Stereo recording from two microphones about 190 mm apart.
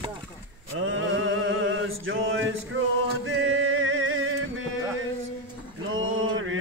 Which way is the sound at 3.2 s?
90° right.